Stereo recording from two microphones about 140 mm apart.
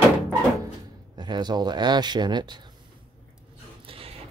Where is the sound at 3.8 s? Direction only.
40° right (ahead or behind).